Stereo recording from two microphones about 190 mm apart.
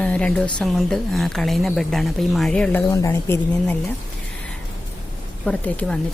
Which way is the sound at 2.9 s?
15° left (ahead or behind).